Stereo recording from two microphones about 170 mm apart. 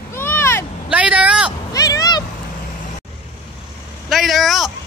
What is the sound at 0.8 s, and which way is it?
Vehicle, 5° right (ahead or behind).